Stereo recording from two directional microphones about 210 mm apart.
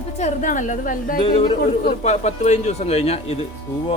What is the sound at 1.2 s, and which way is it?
Speech, 25° left (ahead or behind).